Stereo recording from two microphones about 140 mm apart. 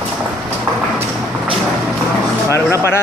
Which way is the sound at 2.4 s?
20° left (ahead or behind).